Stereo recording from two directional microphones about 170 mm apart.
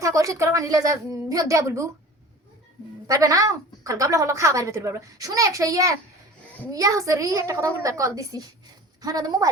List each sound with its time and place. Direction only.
0.0 s a woman's voice: 20° right (ahead or behind)
3.1 s a woman's voice: 20° right (ahead or behind)